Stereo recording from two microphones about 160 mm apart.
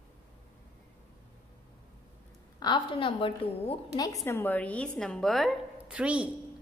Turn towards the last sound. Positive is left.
turn(degrees=-10)  # may be behind; listen again after turning